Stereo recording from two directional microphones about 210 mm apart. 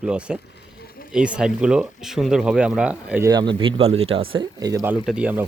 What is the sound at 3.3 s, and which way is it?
Speech, 20° right (ahead or behind).